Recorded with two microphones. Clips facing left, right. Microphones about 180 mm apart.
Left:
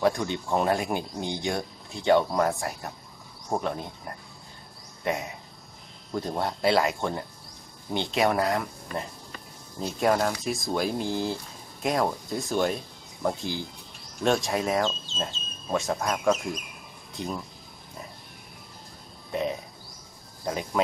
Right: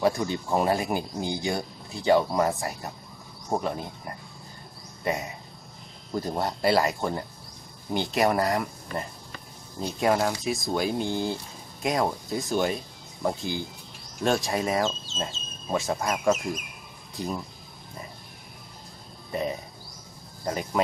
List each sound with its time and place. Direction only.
0.0 s speech: 5° right (ahead or behind)
19.3 s speech: centre (ahead or behind)